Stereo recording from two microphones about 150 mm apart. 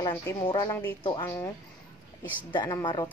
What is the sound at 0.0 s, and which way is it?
A woman's voice, 20° left (ahead or behind).